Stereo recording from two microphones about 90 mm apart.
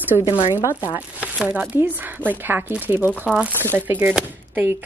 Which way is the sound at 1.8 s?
25° right (ahead or behind).